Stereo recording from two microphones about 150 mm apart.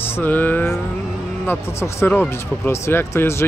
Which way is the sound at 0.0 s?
15° left (ahead or behind).